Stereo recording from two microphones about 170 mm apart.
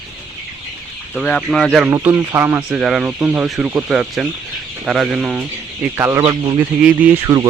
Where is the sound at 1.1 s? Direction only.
5° left (ahead or behind).